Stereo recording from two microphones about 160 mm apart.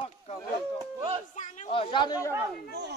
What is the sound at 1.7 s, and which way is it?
Speech, 30° left (ahead or behind).